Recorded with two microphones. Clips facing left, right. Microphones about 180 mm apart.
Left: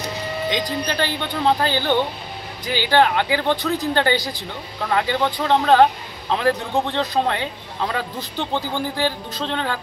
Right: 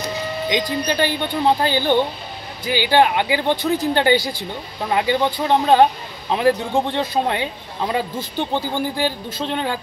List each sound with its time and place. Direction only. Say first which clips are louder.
0.8 s speech: right 3 dB; 15° right (ahead or behind)
4.2 s speech: right 2 dB; 15° left (ahead or behind)
4.8 s speech: right 2 dB; 15° right (ahead or behind)